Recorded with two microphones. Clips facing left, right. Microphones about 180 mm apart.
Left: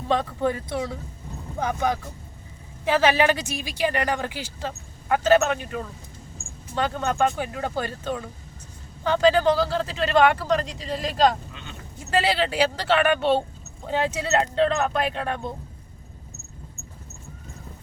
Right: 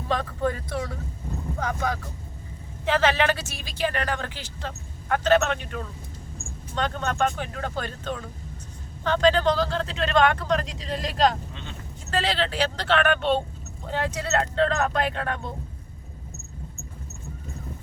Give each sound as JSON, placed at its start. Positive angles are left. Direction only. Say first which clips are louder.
{"t": 0.4, "sound": "a woman's voice", "louder": "left 2 dB", "side_deg": 20}
{"t": 13.8, "sound": "a woman's voice", "louder": "left 3 dB", "side_deg": 20}